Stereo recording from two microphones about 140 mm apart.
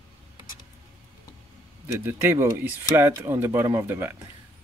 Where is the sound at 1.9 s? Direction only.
15° right (ahead or behind).